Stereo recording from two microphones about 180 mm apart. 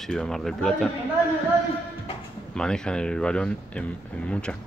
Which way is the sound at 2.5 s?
5° left (ahead or behind).